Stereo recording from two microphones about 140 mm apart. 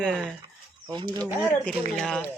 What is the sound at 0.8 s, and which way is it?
Speech, 30° right (ahead or behind).